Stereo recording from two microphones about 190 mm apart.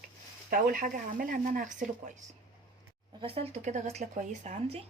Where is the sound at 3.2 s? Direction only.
30° right (ahead or behind).